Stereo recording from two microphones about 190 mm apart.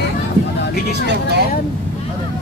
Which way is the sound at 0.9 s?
60° right (ahead or behind).